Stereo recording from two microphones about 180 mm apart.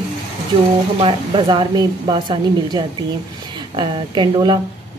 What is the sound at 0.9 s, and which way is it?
A woman's voice, 30° right (ahead or behind).